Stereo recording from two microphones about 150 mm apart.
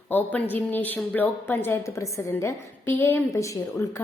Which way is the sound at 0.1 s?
10° left (ahead or behind).